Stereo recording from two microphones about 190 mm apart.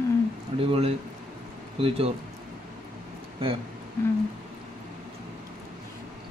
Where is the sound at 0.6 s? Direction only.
30° right (ahead or behind).